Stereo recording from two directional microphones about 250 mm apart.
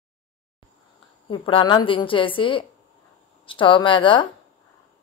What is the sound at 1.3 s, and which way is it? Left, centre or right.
Speech, centre.